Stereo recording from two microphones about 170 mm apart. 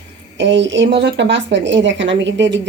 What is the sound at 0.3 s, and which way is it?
Speech, 90° right.